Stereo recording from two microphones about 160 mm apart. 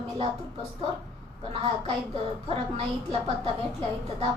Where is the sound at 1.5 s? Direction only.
35° right (ahead or behind).